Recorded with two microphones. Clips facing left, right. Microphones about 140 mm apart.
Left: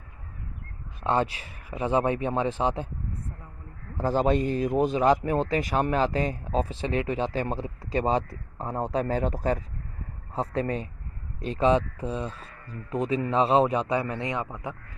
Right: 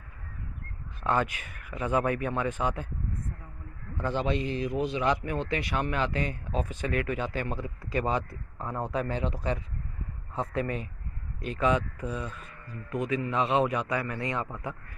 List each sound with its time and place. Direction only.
1.0 s speech: 30° left (ahead or behind)
3.9 s a man's voice: 40° left (ahead or behind)
10.3 s a man's voice: 35° left (ahead or behind)